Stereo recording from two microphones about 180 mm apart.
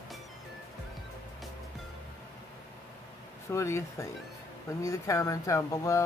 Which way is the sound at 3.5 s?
15° left (ahead or behind).